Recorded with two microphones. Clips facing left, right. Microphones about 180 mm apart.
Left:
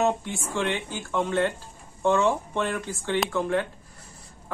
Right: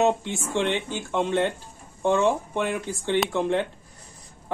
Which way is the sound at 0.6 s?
20° right (ahead or behind).